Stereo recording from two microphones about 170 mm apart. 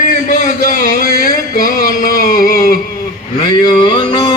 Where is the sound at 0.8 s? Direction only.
55° left (ahead or behind).